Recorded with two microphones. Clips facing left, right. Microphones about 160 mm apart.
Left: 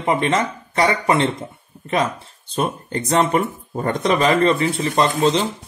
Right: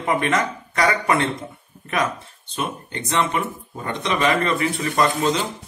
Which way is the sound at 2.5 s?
40° left (ahead or behind).